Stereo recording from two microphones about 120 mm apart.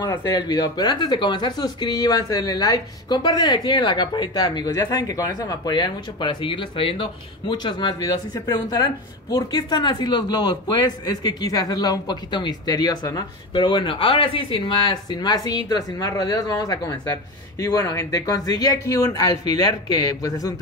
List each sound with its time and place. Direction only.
0.0 s speech: 35° left (ahead or behind)